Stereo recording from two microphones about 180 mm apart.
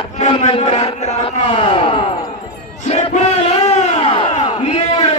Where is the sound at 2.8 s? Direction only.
40° left (ahead or behind).